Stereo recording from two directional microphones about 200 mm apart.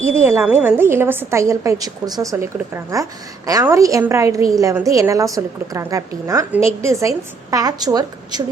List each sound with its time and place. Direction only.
0.2 s a woman's voice: 10° right (ahead or behind)